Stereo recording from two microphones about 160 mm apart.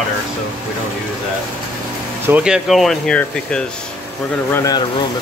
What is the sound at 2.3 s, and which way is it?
Speech, 5° right (ahead or behind).